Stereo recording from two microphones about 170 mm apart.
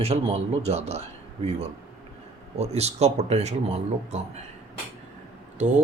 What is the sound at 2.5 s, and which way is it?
Speech, 40° right (ahead or behind).